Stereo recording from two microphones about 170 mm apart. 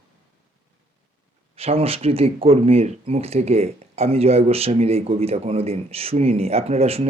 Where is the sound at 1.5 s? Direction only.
35° right (ahead or behind).